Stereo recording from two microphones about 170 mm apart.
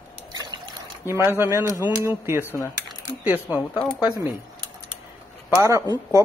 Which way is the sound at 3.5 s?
10° right (ahead or behind).